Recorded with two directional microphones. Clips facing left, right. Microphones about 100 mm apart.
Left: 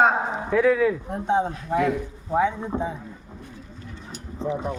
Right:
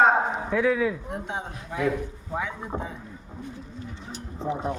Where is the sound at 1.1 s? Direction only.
30° left (ahead or behind).